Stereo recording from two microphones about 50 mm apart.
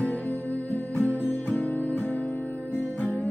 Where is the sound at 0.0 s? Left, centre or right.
Left.